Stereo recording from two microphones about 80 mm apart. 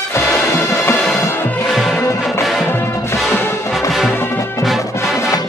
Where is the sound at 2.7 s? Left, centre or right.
Left.